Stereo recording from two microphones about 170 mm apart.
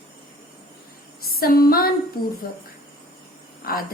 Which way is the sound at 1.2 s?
60° left (ahead or behind).